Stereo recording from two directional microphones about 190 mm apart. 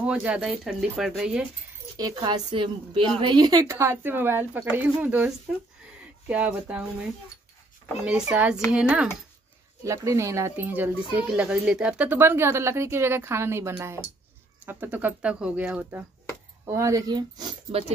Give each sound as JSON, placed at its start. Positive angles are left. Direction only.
{"t": 0.0, "sound": "speech", "side_deg": -5}
{"t": 2.0, "sound": "speech", "side_deg": -20}
{"t": 9.8, "sound": "speech", "side_deg": -15}